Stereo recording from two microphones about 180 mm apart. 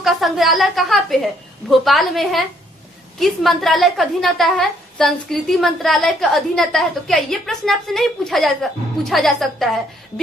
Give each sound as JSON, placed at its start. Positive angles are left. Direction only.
{"t": 0.0, "sound": "a woman's voice", "side_deg": 0}